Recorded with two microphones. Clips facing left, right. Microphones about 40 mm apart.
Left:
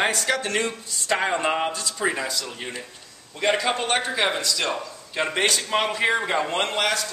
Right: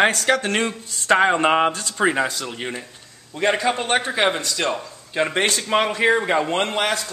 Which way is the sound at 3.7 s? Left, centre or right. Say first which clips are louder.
Right 3 dB; right.